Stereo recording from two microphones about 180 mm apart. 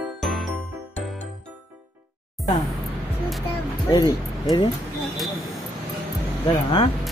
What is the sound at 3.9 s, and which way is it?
Speech, 20° left (ahead or behind).